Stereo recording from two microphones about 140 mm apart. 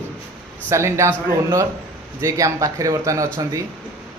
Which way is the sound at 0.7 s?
20° right (ahead or behind).